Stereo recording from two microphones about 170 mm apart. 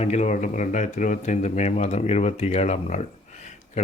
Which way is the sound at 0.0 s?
40° left (ahead or behind).